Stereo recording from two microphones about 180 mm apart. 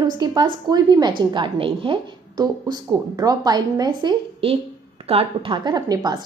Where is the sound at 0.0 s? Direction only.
25° right (ahead or behind).